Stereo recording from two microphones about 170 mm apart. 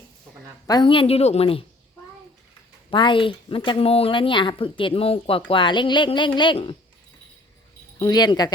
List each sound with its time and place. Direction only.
0.7 s speech: 30° left (ahead or behind)
2.9 s speech: 30° left (ahead or behind)
7.9 s speech: 20° left (ahead or behind)